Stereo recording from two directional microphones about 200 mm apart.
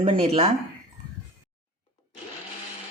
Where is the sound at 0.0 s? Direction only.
30° right (ahead or behind).